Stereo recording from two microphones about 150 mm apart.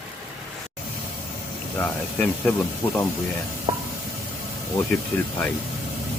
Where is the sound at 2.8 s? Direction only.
10° left (ahead or behind).